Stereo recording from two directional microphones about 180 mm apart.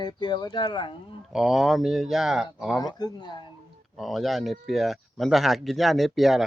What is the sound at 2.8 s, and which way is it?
Speech, 20° left (ahead or behind).